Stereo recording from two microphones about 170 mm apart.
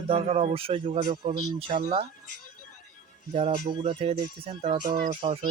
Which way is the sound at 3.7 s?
30° right (ahead or behind).